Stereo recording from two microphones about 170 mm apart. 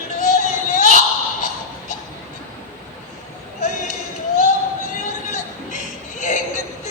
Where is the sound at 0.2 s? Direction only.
45° left (ahead or behind).